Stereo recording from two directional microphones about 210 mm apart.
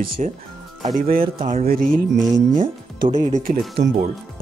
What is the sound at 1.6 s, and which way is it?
Speech, 40° right (ahead or behind).